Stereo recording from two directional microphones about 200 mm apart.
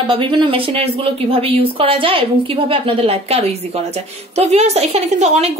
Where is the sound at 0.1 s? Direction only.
25° right (ahead or behind).